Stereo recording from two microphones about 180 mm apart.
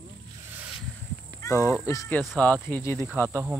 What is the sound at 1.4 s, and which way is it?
Speech, 15° left (ahead or behind).